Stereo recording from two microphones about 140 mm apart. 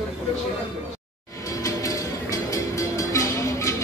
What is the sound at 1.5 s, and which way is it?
Music, 25° left (ahead or behind).